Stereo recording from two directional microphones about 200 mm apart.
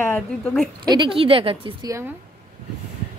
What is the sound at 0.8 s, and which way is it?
A woman's voice, 25° right (ahead or behind).